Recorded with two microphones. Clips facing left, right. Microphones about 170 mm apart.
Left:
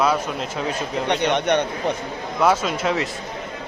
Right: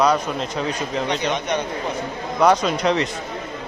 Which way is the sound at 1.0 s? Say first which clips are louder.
Left 6 dB; 65° left (ahead or behind).